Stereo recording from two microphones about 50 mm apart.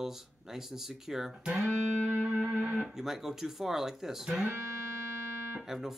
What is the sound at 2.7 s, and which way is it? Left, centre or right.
Speech, centre.